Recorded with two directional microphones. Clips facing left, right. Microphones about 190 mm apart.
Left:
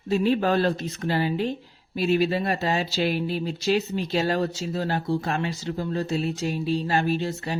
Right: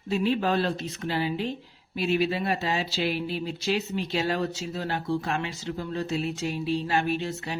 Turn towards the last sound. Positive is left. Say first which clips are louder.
# left 3 dB
turn(degrees=40)  # may be behind; listen again after turning